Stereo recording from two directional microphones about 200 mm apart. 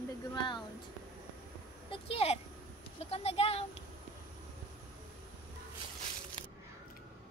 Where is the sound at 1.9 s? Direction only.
30° left (ahead or behind).